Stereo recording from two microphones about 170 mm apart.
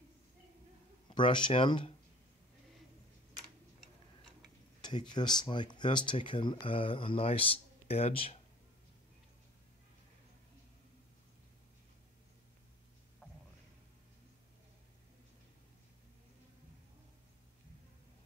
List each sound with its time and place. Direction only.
1.0 s speech: 25° left (ahead or behind)
4.8 s speech: 25° left (ahead or behind)